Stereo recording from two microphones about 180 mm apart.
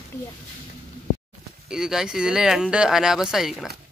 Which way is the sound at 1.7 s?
5° right (ahead or behind).